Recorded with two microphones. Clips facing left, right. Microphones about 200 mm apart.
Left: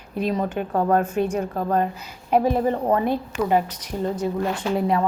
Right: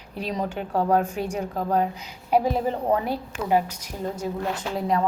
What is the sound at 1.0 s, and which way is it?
Speech, 15° right (ahead or behind).